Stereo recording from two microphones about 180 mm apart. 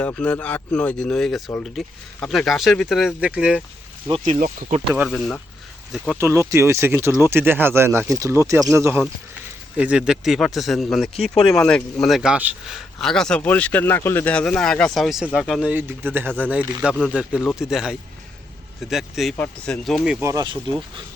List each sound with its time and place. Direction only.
0.0 s speech: 5° left (ahead or behind)
4.2 s speech: 45° right (ahead or behind)
5.0 s speech: 5° left (ahead or behind)
6.1 s speech: 15° right (ahead or behind)
15.7 s speech: 10° right (ahead or behind)
20.2 s speech: 20° right (ahead or behind)